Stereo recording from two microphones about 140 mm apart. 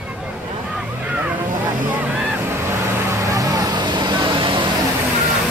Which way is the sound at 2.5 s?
20° right (ahead or behind).